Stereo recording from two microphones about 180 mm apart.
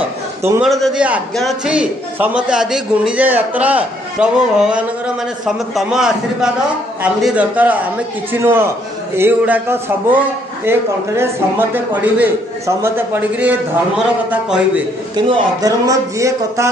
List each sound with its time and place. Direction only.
0.6 s a man's voice: centre (ahead or behind)
15.1 s a man's voice: 20° right (ahead or behind)